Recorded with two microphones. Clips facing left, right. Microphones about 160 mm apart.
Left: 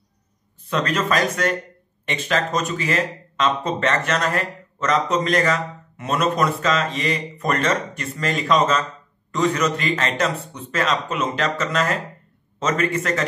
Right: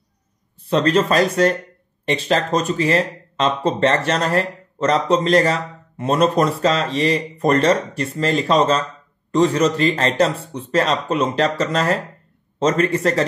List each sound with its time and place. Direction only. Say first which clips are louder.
0.7 s speech: right 6 dB; 30° right (ahead or behind)